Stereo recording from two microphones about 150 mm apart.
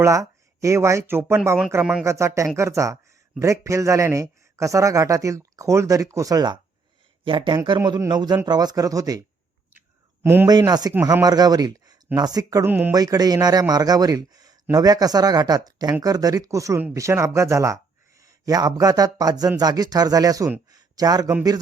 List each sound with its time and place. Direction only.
0.0 s a man's voice: 20° right (ahead or behind)
10.2 s a man's voice: 15° right (ahead or behind)
10.5 s a man's voice: 25° right (ahead or behind)
12.6 s a man's voice: 10° right (ahead or behind)
12.9 s a man's voice: 25° right (ahead or behind)
20.7 s a sound: 25° right (ahead or behind)